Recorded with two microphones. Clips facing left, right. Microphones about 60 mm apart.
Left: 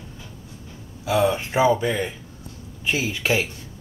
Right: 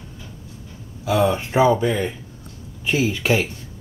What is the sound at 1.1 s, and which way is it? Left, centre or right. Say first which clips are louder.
Speech: right 1 dB; centre.